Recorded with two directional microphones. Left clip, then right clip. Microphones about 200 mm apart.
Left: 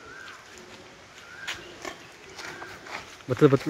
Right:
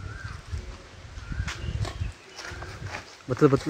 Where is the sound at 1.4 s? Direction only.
20° left (ahead or behind).